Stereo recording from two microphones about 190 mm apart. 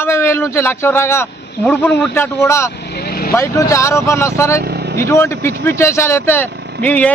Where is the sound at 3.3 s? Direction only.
15° left (ahead or behind).